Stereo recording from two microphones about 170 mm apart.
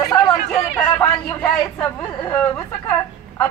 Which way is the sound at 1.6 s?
5° left (ahead or behind).